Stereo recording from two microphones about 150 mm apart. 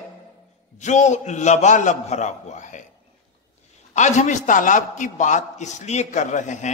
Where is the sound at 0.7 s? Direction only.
55° left (ahead or behind).